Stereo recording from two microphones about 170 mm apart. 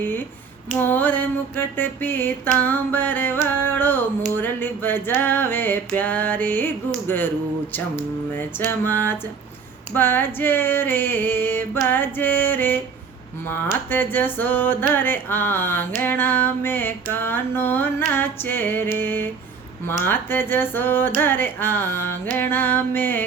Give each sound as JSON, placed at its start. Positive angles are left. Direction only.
{"t": 0.7, "sound": "music", "side_deg": 10}
{"t": 8.4, "sound": "music", "side_deg": 10}
{"t": 13.9, "sound": "music", "side_deg": 10}